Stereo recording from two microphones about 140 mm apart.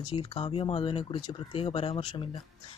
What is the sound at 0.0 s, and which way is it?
Speech, 35° left (ahead or behind).